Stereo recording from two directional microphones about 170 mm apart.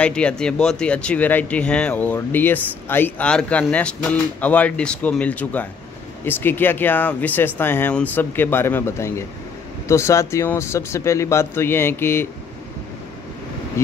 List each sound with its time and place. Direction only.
0.0 s speech: 5° left (ahead or behind)